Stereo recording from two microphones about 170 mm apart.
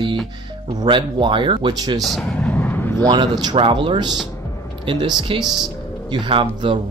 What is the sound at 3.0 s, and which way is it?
Speech, 25° right (ahead or behind).